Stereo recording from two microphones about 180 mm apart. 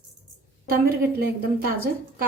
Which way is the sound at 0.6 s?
55° right (ahead or behind).